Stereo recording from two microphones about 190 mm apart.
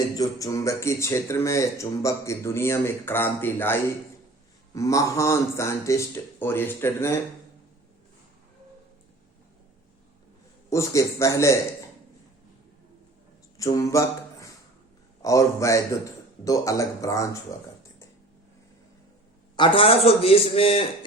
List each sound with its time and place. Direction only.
0.1 s speech: 20° left (ahead or behind)
10.7 s speech: 15° left (ahead or behind)
13.6 s a sound: 15° left (ahead or behind)
15.2 s speech: 15° left (ahead or behind)
19.5 s a man's voice: 25° left (ahead or behind)